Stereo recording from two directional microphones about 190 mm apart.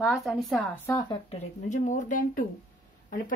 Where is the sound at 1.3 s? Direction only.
40° left (ahead or behind).